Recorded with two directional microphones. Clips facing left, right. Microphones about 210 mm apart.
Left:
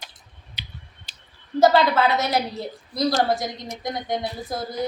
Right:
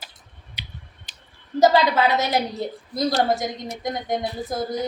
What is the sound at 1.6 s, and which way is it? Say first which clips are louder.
Speech: even; 15° right (ahead or behind).